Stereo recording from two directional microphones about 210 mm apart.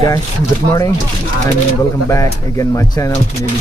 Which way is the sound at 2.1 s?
15° left (ahead or behind).